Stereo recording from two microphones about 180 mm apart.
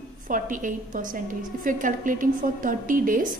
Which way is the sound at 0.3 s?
45° right (ahead or behind).